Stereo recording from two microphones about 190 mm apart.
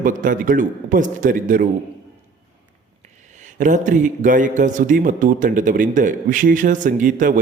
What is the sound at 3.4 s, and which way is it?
Speech, 40° right (ahead or behind).